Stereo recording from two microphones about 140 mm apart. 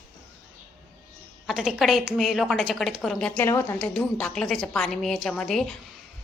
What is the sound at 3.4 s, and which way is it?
Speech, 20° left (ahead or behind).